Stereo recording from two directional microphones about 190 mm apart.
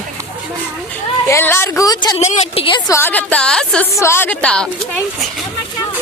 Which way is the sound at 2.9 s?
10° left (ahead or behind).